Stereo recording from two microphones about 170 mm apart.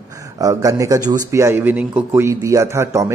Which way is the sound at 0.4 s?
20° right (ahead or behind).